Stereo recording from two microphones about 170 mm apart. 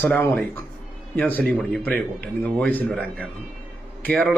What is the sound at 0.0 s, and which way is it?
A man's voice, 15° left (ahead or behind).